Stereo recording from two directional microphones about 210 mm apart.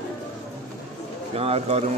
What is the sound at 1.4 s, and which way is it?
Bird, 30° right (ahead or behind).